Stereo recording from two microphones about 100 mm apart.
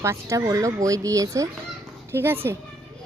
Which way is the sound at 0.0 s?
30° right (ahead or behind).